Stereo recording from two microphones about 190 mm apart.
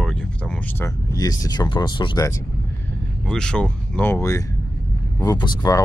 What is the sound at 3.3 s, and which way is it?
Speech, 5° left (ahead or behind).